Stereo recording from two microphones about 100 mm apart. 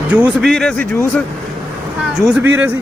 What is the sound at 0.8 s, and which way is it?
Speech, 15° left (ahead or behind).